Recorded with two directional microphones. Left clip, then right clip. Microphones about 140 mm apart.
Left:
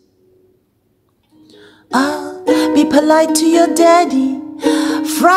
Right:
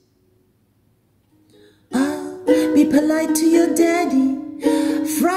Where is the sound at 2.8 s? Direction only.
15° right (ahead or behind).